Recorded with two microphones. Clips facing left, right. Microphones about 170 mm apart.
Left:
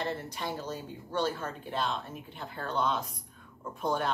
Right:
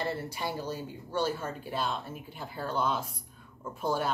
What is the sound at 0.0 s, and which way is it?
Speech, 10° right (ahead or behind).